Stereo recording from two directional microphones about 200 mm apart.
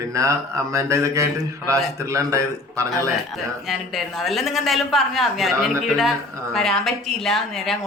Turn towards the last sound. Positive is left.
turn(degrees=0)  # may be behind; listen again after turning